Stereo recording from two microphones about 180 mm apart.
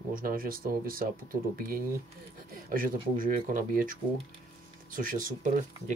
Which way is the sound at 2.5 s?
50° right (ahead or behind).